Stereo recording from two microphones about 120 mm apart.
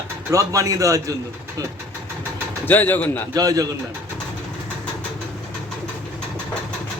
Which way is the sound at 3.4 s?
30° right (ahead or behind).